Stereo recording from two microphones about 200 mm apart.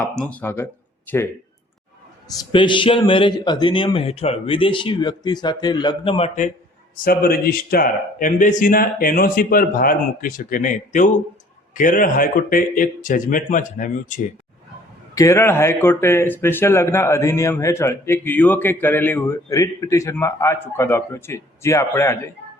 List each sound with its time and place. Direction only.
0.0 s speech: 5° left (ahead or behind)
2.4 s a man's voice: 25° left (ahead or behind)
7.0 s speech: 45° left (ahead or behind)
15.1 s speech: 15° left (ahead or behind)